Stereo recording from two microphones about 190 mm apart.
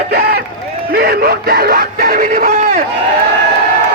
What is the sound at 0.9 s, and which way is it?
Speech, 55° right (ahead or behind).